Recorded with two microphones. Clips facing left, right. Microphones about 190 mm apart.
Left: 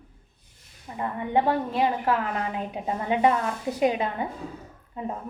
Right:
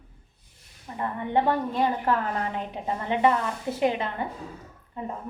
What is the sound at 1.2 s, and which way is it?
A woman's voice, 15° left (ahead or behind).